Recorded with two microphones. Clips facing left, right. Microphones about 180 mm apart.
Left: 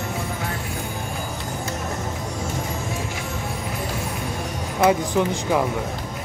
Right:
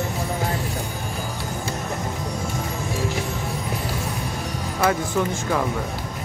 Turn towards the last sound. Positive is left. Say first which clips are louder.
# left 2 dB
turn(degrees=15)  # may be behind; listen again after turning